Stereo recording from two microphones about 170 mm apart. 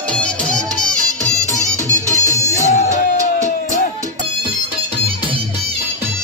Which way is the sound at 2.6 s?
45° left (ahead or behind).